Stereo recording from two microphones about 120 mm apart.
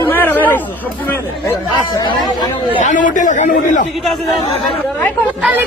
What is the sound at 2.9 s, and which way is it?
Speech, 90° left.